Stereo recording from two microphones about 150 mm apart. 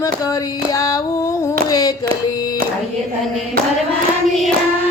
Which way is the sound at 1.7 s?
25° left (ahead or behind).